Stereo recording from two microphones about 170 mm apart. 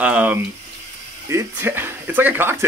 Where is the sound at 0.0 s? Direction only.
10° right (ahead or behind).